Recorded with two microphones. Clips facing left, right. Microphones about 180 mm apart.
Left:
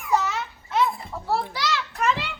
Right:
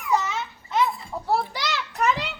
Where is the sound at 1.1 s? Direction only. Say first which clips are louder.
Right 2 dB; 20° right (ahead or behind).